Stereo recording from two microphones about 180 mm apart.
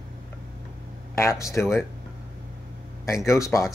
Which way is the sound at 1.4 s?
15° left (ahead or behind).